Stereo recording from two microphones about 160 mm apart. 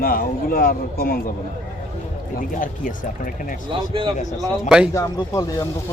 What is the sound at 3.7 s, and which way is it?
Speech, 30° right (ahead or behind).